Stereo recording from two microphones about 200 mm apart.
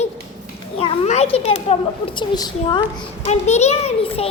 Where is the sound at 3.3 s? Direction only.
35° left (ahead or behind).